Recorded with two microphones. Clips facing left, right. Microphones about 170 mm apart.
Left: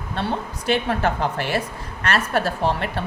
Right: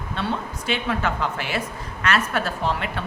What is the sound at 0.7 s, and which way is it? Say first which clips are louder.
A woman's voice: left 3 dB; 40° left (ahead or behind).